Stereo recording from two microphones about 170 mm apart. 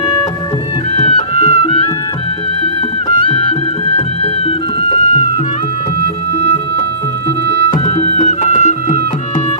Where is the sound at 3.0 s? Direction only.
30° left (ahead or behind).